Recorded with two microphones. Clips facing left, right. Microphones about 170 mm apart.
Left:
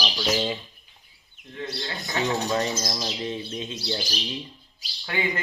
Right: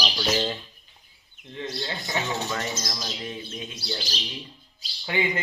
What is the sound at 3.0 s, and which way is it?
Bird, 25° left (ahead or behind).